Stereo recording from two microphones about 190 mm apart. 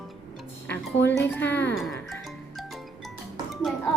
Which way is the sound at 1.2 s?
10° left (ahead or behind).